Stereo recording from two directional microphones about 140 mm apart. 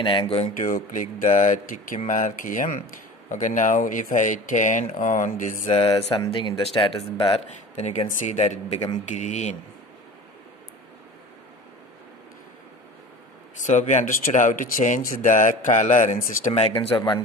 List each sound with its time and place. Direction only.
0.0 s speech: 35° left (ahead or behind)
0.6 s speech: 70° left (ahead or behind)
5.9 s speech: 25° left (ahead or behind)
6.3 s speech: 35° left (ahead or behind)
7.4 s speech: 55° left (ahead or behind)
13.7 s speech: 60° left (ahead or behind)
16.5 s speech: 45° left (ahead or behind)